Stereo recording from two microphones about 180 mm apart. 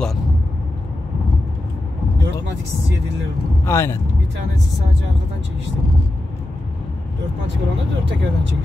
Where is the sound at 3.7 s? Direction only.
15° left (ahead or behind).